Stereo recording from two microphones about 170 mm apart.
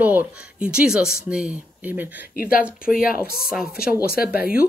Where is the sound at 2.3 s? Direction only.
60° left (ahead or behind).